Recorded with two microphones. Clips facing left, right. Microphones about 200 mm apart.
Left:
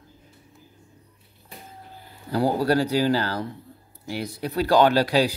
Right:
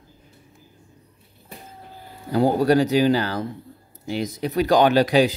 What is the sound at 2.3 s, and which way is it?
Speech, 20° right (ahead or behind).